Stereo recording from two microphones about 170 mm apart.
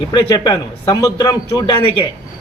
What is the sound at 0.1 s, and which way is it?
A man's voice, 25° left (ahead or behind).